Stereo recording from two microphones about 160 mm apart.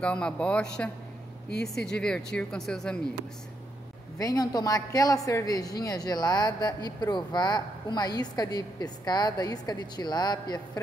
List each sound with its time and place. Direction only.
0.0 s speech: 5° left (ahead or behind)
4.2 s a woman's voice: 20° left (ahead or behind)